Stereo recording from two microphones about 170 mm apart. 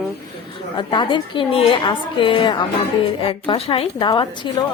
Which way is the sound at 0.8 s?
30° left (ahead or behind).